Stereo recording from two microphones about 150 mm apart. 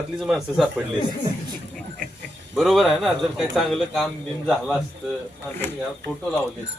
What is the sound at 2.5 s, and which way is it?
A man's voice, centre (ahead or behind).